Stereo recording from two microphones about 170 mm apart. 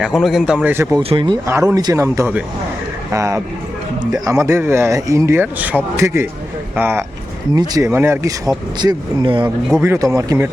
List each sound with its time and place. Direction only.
0.0 s a man's voice: centre (ahead or behind)
0.9 s speech: 25° right (ahead or behind)
9.8 s speech: 15° right (ahead or behind)